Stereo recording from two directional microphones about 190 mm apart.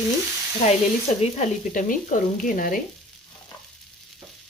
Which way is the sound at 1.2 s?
40° left (ahead or behind).